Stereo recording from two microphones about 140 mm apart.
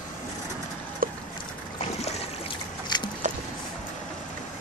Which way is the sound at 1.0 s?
90° right.